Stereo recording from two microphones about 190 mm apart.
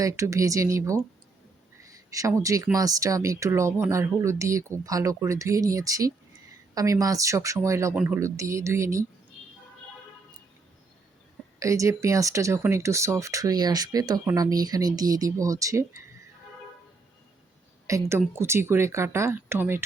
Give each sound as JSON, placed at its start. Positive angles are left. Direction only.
{"t": 0.0, "sound": "speech", "side_deg": -15}
{"t": 1.8, "sound": "a sound", "side_deg": -15}
{"t": 2.4, "sound": "speech", "side_deg": -15}
{"t": 11.6, "sound": "speech", "side_deg": -15}
{"t": 17.8, "sound": "speech", "side_deg": -15}